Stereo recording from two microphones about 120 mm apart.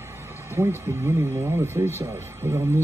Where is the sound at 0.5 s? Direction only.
20° right (ahead or behind).